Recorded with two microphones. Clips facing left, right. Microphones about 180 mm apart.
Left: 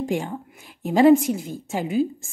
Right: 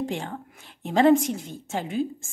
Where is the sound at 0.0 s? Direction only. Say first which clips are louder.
Left 4 dB; 10° left (ahead or behind).